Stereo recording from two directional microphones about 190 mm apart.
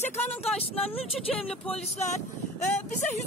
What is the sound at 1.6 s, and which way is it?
Speech, 35° left (ahead or behind).